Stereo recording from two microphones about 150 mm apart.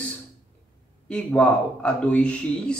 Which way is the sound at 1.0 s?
5° left (ahead or behind).